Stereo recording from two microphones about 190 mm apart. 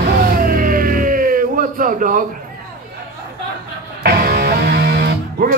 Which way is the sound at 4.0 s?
55° right (ahead or behind).